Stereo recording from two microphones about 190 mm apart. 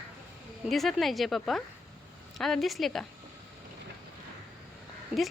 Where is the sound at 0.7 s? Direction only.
Centre (ahead or behind).